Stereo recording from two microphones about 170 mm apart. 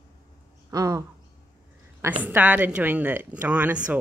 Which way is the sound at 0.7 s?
20° right (ahead or behind).